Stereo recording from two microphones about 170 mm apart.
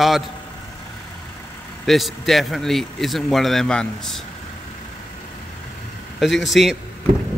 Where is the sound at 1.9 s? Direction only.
Centre (ahead or behind).